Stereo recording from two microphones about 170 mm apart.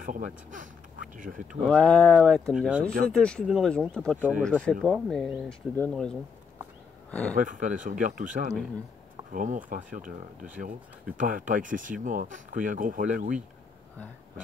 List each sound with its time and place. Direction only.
0.0 s speech: 50° right (ahead or behind)
1.6 s speech: 5° left (ahead or behind)
7.3 s speech: 50° right (ahead or behind)